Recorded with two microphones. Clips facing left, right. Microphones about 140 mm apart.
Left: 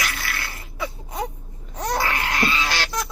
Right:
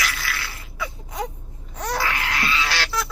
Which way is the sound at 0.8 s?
25° left (ahead or behind).